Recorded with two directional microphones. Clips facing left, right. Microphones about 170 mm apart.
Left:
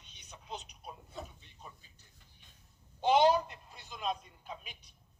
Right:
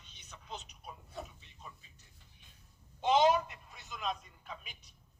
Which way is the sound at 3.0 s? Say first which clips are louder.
Left 1 dB; 35° left (ahead or behind).